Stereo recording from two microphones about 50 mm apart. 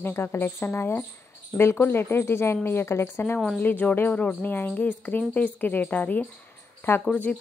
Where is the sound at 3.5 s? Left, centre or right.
Left.